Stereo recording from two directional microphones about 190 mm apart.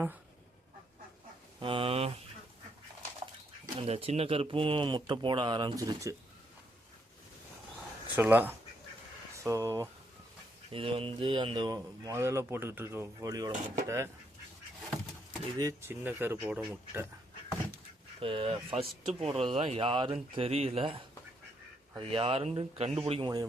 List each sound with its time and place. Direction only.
1.5 s speech: 25° right (ahead or behind)
3.8 s speech: 30° right (ahead or behind)
8.1 s speech: 10° right (ahead or behind)
10.7 s speech: 30° right (ahead or behind)
13.5 s speech: 40° right (ahead or behind)
13.8 s speech: 15° right (ahead or behind)
15.5 s speech: 15° right (ahead or behind)
18.2 s speech: 30° right (ahead or behind)